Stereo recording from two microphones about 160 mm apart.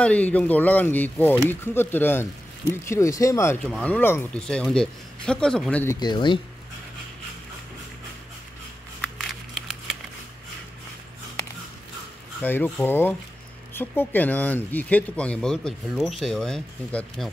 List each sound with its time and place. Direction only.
0.0 s speech: 10° left (ahead or behind)
3.6 s speech: 10° left (ahead or behind)
5.9 s speech: 25° left (ahead or behind)
9.2 s crumpling: centre (ahead or behind)
12.4 s speech: 10° left (ahead or behind)